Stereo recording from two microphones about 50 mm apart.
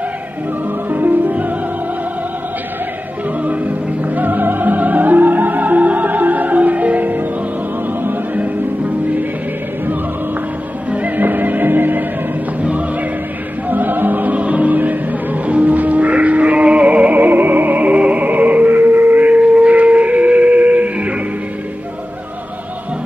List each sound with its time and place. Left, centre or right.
0.8 s music: right
3.4 s music: right
10.9 s music: right
13.7 s music: right